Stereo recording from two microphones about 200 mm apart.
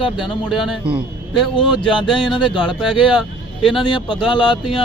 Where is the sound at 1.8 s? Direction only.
25° left (ahead or behind).